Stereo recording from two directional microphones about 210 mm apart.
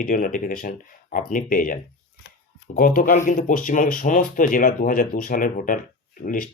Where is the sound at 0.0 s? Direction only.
40° left (ahead or behind).